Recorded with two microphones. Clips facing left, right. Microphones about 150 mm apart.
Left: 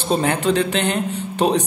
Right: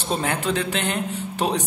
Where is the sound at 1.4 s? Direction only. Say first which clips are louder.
Left 6 dB; 20° left (ahead or behind).